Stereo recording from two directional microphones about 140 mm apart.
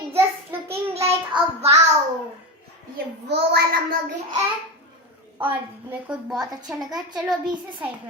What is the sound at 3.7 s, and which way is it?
Speech, 90° right.